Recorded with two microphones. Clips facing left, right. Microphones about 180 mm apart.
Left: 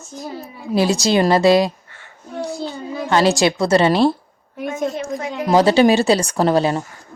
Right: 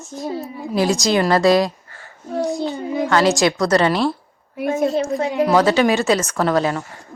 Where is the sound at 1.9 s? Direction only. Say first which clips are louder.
Right 5 dB; 35° right (ahead or behind).